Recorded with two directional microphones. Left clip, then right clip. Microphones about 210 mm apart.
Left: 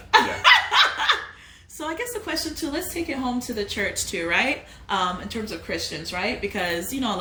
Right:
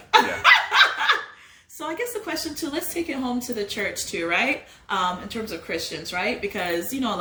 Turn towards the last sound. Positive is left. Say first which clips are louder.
# even
turn(degrees=10)  # may be behind; listen again after turning